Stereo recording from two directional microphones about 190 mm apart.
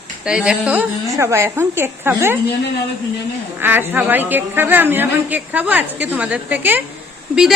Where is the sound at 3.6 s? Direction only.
10° right (ahead or behind).